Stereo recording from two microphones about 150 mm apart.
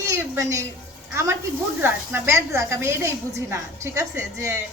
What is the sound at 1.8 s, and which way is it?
A woman's voice, 15° right (ahead or behind).